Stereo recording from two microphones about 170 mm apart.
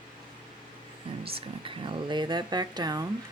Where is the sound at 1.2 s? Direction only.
35° right (ahead or behind).